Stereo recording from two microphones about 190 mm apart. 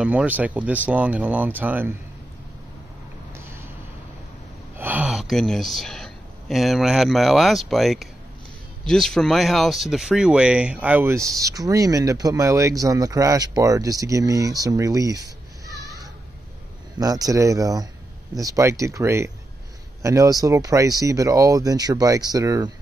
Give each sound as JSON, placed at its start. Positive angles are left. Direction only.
{"t": 0.0, "sound": "speech", "side_deg": -5}
{"t": 4.7, "sound": "speech", "side_deg": -10}